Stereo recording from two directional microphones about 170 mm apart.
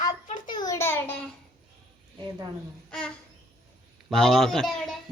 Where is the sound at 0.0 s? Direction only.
25° left (ahead or behind).